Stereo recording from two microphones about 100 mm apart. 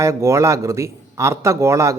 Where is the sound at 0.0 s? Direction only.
30° right (ahead or behind).